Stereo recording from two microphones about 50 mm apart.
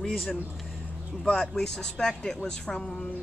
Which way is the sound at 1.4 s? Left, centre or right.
Centre.